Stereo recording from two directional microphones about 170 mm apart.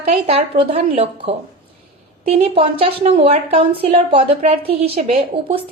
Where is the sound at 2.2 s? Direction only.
35° right (ahead or behind).